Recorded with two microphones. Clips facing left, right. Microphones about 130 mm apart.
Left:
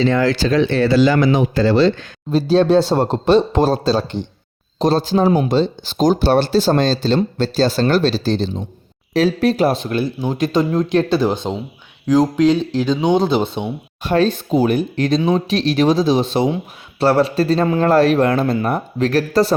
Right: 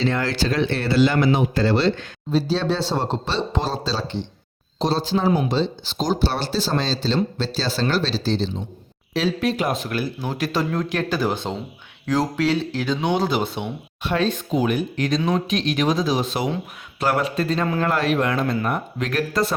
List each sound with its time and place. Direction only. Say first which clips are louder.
0.3 s speech: left 6 dB; 90° left
2.3 s a man's voice: left 8 dB; 50° left (ahead or behind)
9.8 s speech: left 6 dB; 25° left (ahead or behind)
14.0 s a man's voice: left 6 dB; 40° left (ahead or behind)